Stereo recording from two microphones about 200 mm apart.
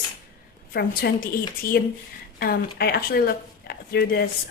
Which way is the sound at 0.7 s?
50° left (ahead or behind).